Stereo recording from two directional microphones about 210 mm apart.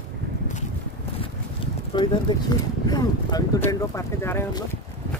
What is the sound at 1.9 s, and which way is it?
Speech, 20° left (ahead or behind).